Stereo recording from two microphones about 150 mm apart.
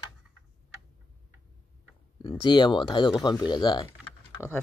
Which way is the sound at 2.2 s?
30° left (ahead or behind).